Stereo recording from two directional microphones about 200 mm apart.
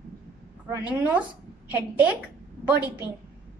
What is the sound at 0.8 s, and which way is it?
A woman's voice, 5° right (ahead or behind).